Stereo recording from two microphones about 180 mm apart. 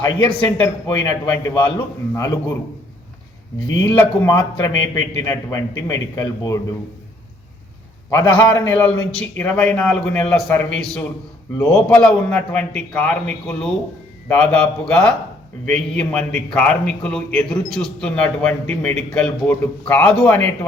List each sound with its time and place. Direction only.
0.0 s a man's voice: 10° left (ahead or behind)
3.8 s a man's voice: 15° left (ahead or behind)
8.1 s a man's voice: 20° left (ahead or behind)
11.9 s a man's voice: 5° left (ahead or behind)